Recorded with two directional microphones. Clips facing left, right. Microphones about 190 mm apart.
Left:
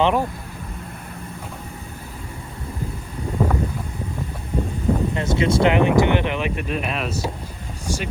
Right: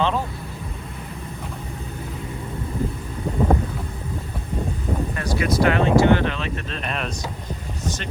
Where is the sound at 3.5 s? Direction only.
35° right (ahead or behind).